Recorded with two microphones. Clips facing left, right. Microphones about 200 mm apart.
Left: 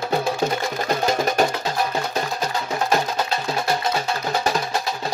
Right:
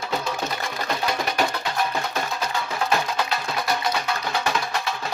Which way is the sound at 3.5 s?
25° left (ahead or behind).